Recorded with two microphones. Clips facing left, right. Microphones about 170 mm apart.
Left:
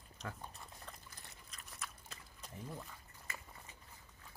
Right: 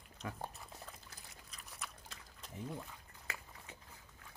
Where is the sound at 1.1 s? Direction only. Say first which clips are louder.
Even; centre (ahead or behind).